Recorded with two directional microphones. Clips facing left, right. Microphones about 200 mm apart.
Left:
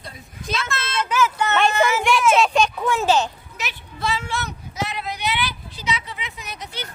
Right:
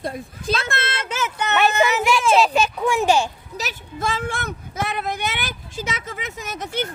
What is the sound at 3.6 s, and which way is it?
Speech, 45° right (ahead or behind).